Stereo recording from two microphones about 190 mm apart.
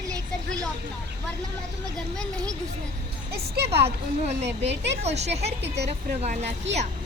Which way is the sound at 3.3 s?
60° right (ahead or behind).